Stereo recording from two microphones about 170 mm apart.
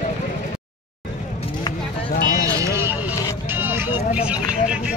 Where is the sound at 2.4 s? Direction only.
15° right (ahead or behind).